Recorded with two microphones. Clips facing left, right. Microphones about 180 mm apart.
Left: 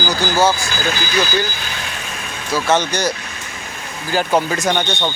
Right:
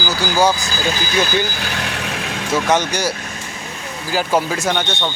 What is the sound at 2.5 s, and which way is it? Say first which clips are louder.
Speech: even; 10° right (ahead or behind).